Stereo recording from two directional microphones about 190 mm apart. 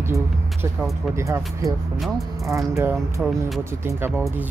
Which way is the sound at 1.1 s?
15° right (ahead or behind).